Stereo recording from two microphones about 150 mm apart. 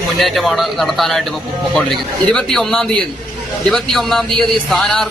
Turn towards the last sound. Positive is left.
turn(degrees=5)  # may be behind; listen again after turning